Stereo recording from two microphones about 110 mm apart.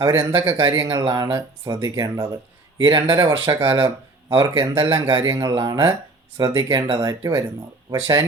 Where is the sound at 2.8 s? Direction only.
40° right (ahead or behind).